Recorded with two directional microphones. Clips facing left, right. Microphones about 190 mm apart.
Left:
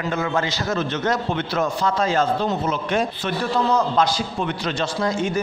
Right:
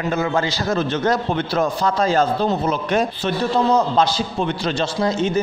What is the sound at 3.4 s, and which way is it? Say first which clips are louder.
A man's voice: right 3 dB; 25° right (ahead or behind).